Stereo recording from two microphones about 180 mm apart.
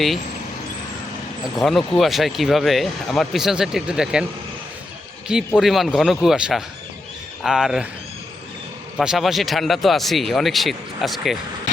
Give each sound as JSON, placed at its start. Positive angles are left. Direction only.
{"t": 1.5, "sound": "speech", "side_deg": 0}
{"t": 5.5, "sound": "speech", "side_deg": 0}
{"t": 9.0, "sound": "speech", "side_deg": 0}